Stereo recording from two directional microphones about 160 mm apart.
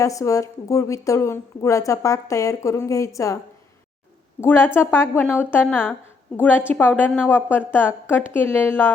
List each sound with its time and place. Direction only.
0.0 s a woman's voice: 20° left (ahead or behind)
4.4 s a woman's voice: 15° left (ahead or behind)